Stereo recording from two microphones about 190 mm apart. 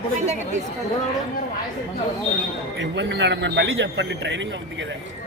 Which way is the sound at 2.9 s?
70° right (ahead or behind).